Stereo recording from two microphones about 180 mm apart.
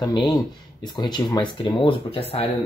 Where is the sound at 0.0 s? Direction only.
20° left (ahead or behind).